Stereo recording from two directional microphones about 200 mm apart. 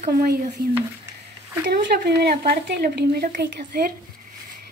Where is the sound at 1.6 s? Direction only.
50° right (ahead or behind).